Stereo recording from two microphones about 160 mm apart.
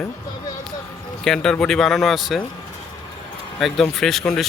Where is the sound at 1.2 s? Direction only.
5° left (ahead or behind).